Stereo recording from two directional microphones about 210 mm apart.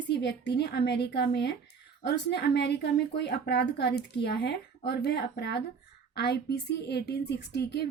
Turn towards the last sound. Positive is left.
turn(degrees=50)  # may be behind; listen again after turning